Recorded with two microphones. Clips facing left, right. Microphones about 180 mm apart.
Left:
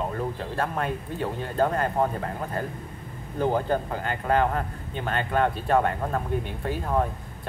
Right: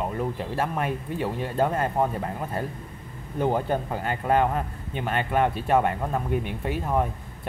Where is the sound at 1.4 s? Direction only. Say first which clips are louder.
Left 1 dB; 25° right (ahead or behind).